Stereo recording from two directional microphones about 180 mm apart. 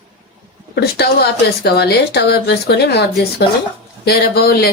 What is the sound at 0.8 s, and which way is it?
Speech, 65° left (ahead or behind).